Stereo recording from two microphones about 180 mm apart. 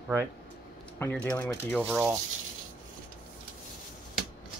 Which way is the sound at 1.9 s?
10° right (ahead or behind).